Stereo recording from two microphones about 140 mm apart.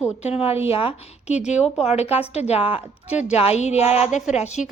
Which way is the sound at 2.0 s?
45° left (ahead or behind).